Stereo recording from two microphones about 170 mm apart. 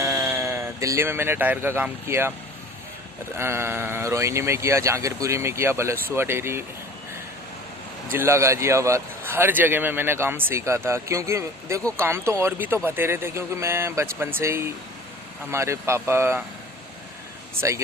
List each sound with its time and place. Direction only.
0.0 s speech: 15° right (ahead or behind)
3.3 s a man's voice: 15° right (ahead or behind)
8.1 s a man's voice: 15° right (ahead or behind)
17.6 s a man's voice: 15° right (ahead or behind)